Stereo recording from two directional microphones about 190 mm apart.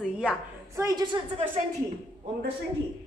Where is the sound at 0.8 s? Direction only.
20° right (ahead or behind).